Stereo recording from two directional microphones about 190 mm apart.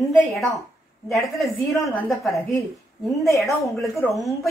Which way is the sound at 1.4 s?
Centre (ahead or behind).